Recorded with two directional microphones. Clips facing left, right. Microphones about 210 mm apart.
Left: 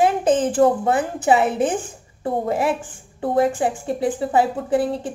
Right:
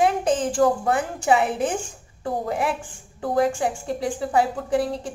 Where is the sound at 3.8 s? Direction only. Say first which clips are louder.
Left 4 dB; centre (ahead or behind).